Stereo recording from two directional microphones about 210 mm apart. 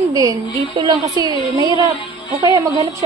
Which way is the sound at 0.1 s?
15° right (ahead or behind).